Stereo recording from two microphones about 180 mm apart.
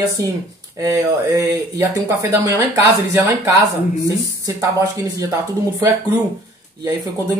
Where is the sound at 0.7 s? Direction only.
20° right (ahead or behind).